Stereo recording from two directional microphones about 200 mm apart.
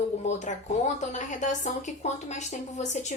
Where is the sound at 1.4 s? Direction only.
35° left (ahead or behind).